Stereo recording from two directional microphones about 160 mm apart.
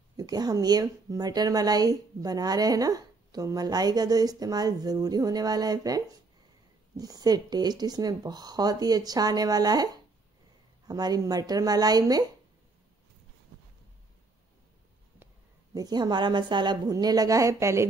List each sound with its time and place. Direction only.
0.2 s speech: 25° right (ahead or behind)
10.9 s speech: 25° right (ahead or behind)
15.7 s speech: 25° right (ahead or behind)